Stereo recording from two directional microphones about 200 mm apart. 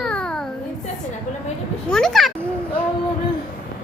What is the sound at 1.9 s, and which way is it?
Speech, centre (ahead or behind).